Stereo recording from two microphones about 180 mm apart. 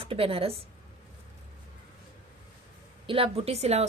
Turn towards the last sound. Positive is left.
turn(degrees=-35)  # may be behind; listen again after turning